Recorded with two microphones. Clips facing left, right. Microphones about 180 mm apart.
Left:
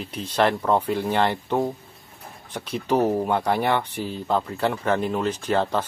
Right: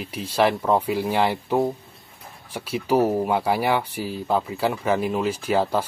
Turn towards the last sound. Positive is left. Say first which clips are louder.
# right 1 dB
turn(degrees=-10)  # may be behind; listen again after turning